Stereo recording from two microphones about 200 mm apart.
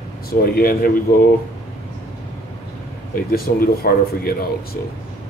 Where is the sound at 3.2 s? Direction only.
45° left (ahead or behind).